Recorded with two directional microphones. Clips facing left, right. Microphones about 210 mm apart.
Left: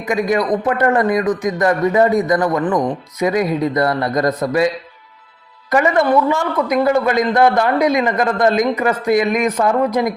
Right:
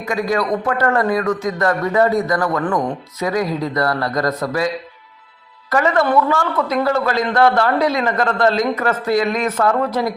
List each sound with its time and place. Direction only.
0.0 s a man's voice: 20° left (ahead or behind)
5.7 s a man's voice: 20° left (ahead or behind)